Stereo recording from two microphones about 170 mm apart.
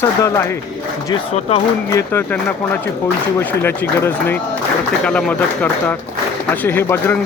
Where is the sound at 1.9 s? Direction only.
15° left (ahead or behind).